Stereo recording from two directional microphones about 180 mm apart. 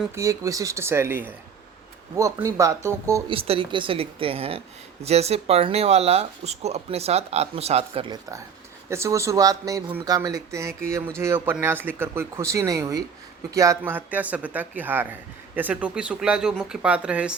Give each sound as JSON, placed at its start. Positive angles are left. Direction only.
{"t": 0.1, "sound": "speech", "side_deg": -15}
{"t": 3.2, "sound": "speech", "side_deg": -30}
{"t": 8.9, "sound": "speech", "side_deg": -15}